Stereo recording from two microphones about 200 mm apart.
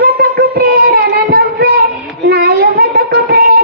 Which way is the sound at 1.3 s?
50° right (ahead or behind).